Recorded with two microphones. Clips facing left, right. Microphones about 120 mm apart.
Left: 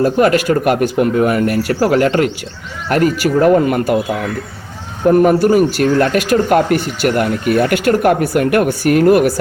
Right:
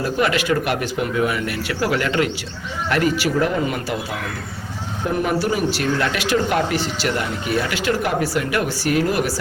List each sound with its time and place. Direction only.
0.0 s speech: 45° left (ahead or behind)
5.0 s speech: 50° left (ahead or behind)